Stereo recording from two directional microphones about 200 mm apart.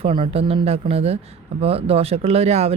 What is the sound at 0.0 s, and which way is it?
Speech, 25° right (ahead or behind).